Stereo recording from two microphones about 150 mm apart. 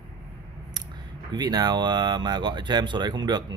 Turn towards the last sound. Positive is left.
turn(degrees=-30)  # may be behind; listen again after turning